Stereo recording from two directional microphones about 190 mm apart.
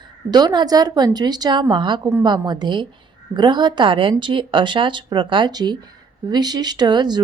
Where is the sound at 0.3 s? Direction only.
20° right (ahead or behind).